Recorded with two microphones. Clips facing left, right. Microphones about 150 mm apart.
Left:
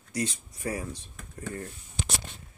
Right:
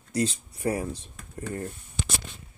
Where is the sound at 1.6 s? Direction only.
55° right (ahead or behind).